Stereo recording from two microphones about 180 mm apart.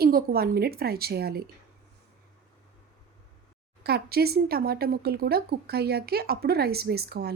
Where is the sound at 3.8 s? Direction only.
60° right (ahead or behind).